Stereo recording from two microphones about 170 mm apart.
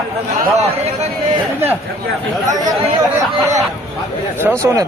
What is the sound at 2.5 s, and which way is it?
A man's voice, 20° right (ahead or behind).